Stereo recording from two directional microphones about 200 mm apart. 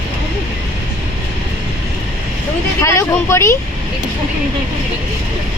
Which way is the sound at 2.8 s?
15° left (ahead or behind).